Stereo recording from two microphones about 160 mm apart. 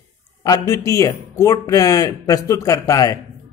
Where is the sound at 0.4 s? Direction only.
20° left (ahead or behind).